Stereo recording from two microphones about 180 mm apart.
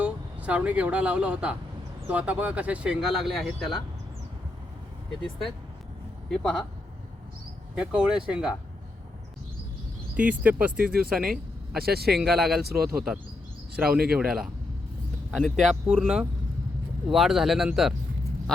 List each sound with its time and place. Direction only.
0.0 s speech: 5° right (ahead or behind)
6.3 s speech: 5° left (ahead or behind)
7.8 s speech: 5° right (ahead or behind)
10.2 s speech: 10° right (ahead or behind)
10.8 s speech: 55° right (ahead or behind)
11.1 s speech: centre (ahead or behind)
11.8 s speech: 60° right (ahead or behind)
12.1 s speech: centre (ahead or behind)